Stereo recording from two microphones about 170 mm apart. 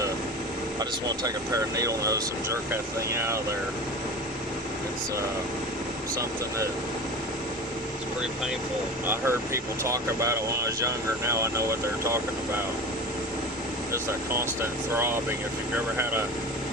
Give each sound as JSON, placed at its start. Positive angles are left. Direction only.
{"t": 1.7, "sound": "speech", "side_deg": -20}
{"t": 9.0, "sound": "speech", "side_deg": -15}
{"t": 13.9, "sound": "speech", "side_deg": -15}